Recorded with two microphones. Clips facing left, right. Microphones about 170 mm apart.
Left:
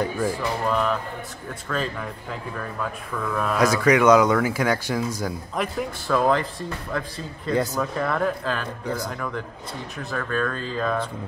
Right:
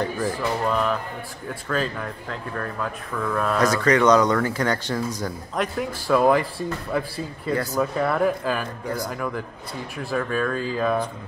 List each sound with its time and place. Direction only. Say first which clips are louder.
0.4 s speech: right 1 dB; centre (ahead or behind)